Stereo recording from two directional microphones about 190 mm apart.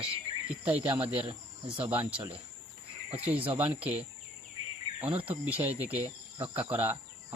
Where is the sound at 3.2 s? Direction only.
10° right (ahead or behind).